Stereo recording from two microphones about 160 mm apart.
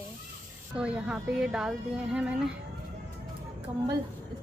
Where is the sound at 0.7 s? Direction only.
5° right (ahead or behind).